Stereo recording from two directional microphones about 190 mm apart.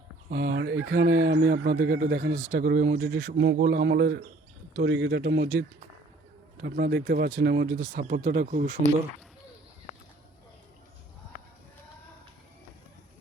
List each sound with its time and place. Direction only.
0.3 s speech: 60° right (ahead or behind)
0.9 s speech: 85° right
1.4 s speech: 45° right (ahead or behind); by 2.3 s 60° right (ahead or behind)
2.3 s speech: 40° right (ahead or behind)
2.8 s speech: 60° right (ahead or behind)
7.8 s speech: 45° right (ahead or behind)